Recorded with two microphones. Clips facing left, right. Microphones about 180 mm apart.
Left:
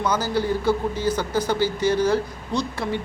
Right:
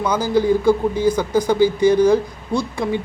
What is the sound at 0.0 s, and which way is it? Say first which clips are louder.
Speech: right 5 dB; 10° right (ahead or behind).